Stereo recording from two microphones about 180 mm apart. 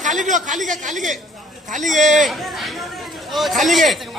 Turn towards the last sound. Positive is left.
turn(degrees=0)  # may be behind; listen again after turning